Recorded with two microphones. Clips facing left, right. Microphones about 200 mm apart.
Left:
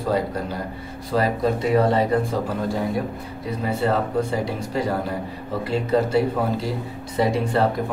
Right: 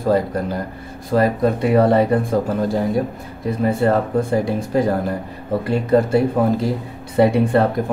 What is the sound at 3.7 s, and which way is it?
Speech, 50° right (ahead or behind).